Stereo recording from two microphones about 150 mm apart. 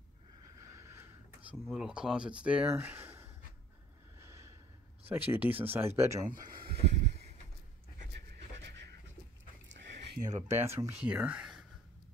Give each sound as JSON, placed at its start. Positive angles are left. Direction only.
{"t": 0.6, "sound": "boat", "side_deg": -20}
{"t": 1.7, "sound": "speech", "side_deg": -5}
{"t": 4.2, "sound": "snort", "side_deg": -20}
{"t": 5.0, "sound": "speech", "side_deg": -15}
{"t": 6.6, "sound": "a sound", "side_deg": -45}
{"t": 10.5, "sound": "speech", "side_deg": -15}